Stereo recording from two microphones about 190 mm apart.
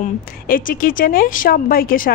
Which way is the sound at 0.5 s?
45° left (ahead or behind).